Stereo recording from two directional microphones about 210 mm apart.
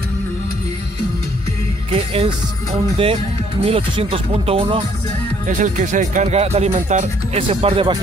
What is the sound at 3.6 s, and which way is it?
Speech, 25° right (ahead or behind).